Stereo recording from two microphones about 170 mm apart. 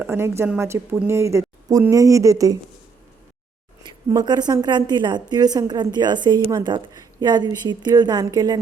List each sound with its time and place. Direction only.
0.0 s a woman's voice: 15° right (ahead or behind)
3.8 s a woman's voice: 25° right (ahead or behind)